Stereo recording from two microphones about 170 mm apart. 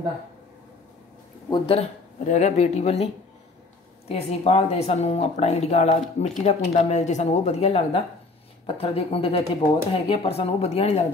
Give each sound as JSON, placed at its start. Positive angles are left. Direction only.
{"t": 1.5, "sound": "speech", "side_deg": 35}
{"t": 4.1, "sound": "speech", "side_deg": 35}